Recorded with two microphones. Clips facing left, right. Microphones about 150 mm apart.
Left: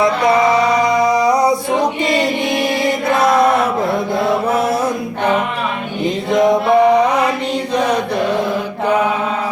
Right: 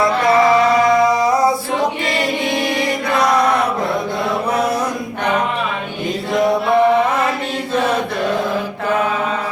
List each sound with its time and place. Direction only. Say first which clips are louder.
1.2 s music: left 1 dB; centre (ahead or behind)
6.3 s mantra: left 3 dB; 20° left (ahead or behind)